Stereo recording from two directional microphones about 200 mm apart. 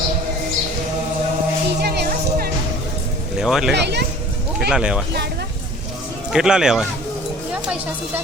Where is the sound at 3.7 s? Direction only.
55° right (ahead or behind).